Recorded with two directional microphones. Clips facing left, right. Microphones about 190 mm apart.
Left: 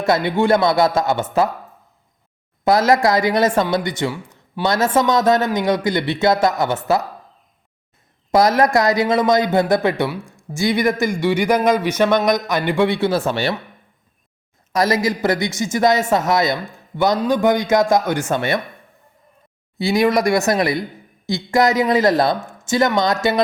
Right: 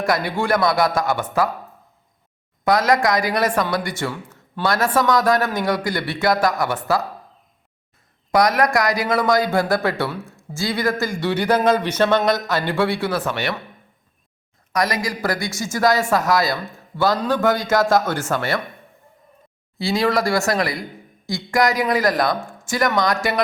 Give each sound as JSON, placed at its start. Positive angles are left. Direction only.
{"t": 0.0, "sound": "speech", "side_deg": 25}
{"t": 2.6, "sound": "speech", "side_deg": 25}
{"t": 8.3, "sound": "a man's voice", "side_deg": 25}
{"t": 14.7, "sound": "a man's voice", "side_deg": 25}
{"t": 19.8, "sound": "speech", "side_deg": 20}